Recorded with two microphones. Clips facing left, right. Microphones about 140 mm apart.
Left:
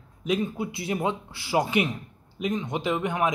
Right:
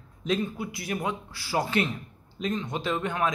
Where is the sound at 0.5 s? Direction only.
25° left (ahead or behind).